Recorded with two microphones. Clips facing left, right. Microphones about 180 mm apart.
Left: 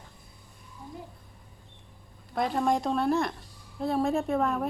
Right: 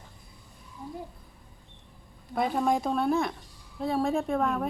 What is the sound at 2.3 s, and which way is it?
A woman's voice, centre (ahead or behind).